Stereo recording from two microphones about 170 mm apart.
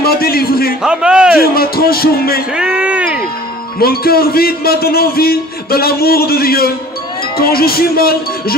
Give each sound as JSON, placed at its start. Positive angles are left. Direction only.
{"t": 0.0, "sound": "a man's voice", "side_deg": 65}
{"t": 0.8, "sound": "a man's voice", "side_deg": -5}
{"t": 1.4, "sound": "a man's voice", "side_deg": 65}
{"t": 2.6, "sound": "speech", "side_deg": -5}
{"t": 3.8, "sound": "a man's voice", "side_deg": 65}